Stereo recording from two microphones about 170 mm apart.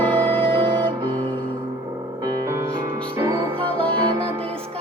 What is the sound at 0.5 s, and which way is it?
Music, 30° right (ahead or behind).